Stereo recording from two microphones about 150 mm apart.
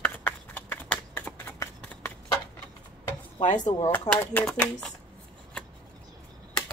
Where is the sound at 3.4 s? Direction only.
55° left (ahead or behind).